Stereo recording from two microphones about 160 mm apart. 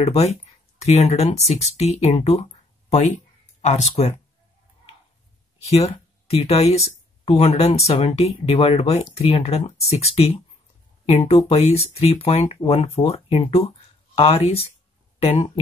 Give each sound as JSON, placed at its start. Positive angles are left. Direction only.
{"t": 0.0, "sound": "speech", "side_deg": 45}
{"t": 5.7, "sound": "speech", "side_deg": 40}